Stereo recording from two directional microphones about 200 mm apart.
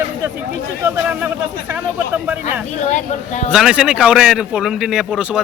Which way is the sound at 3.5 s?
5° right (ahead or behind).